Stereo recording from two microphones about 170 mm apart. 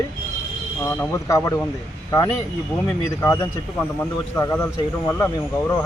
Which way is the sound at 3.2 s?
15° left (ahead or behind).